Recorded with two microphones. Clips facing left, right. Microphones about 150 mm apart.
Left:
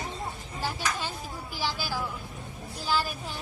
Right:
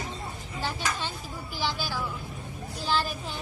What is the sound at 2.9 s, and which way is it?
Speech, 10° left (ahead or behind).